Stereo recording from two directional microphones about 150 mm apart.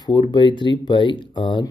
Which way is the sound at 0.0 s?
30° left (ahead or behind).